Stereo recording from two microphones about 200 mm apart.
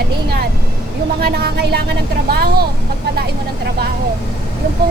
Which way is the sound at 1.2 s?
50° right (ahead or behind).